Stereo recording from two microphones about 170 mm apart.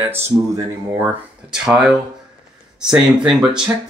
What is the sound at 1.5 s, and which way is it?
Speech, 5° right (ahead or behind).